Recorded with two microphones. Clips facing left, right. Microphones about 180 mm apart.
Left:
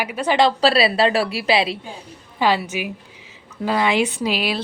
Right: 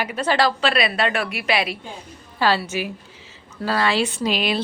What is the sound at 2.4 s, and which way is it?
Speech, 15° left (ahead or behind).